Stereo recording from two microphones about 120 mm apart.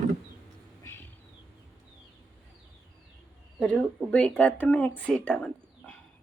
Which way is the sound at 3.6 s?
10° left (ahead or behind).